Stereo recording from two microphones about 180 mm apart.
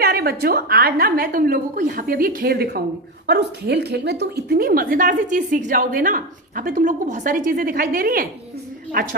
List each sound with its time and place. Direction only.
0.0 s a woman's voice: 60° right (ahead or behind)